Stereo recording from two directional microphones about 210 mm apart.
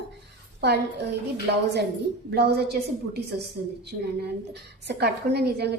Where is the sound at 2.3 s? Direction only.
50° right (ahead or behind).